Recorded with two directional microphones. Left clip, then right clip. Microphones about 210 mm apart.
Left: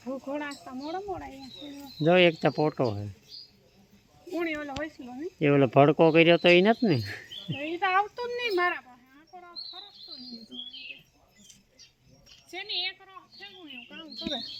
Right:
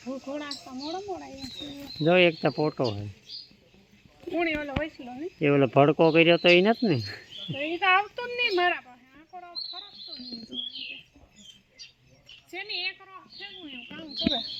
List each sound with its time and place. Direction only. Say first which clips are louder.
0.1 s speech: left 1 dB; centre (ahead or behind)
0.9 s speech: even; 20° right (ahead or behind)
2.0 s speech: even; 10° left (ahead or behind)
4.4 s speech: right 4 dB; 45° right (ahead or behind)
5.4 s speech: even; 15° left (ahead or behind)
7.5 s speech: right 3 dB; 40° right (ahead or behind)
9.3 s bird: right 4 dB; 45° right (ahead or behind)
12.5 s a sound: even; 40° right (ahead or behind)